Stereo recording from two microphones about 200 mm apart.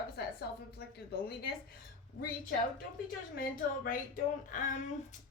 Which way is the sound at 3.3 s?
45° left (ahead or behind).